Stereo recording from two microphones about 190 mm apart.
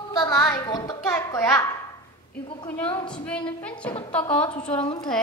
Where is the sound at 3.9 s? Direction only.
30° left (ahead or behind).